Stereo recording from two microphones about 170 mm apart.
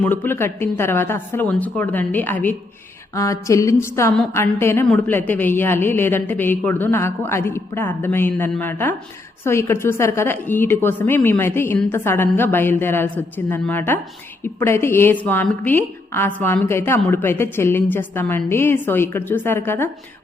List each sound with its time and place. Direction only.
0.0 s a woman's voice: 10° left (ahead or behind)